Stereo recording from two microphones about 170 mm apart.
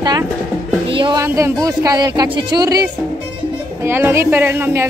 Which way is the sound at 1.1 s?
15° right (ahead or behind).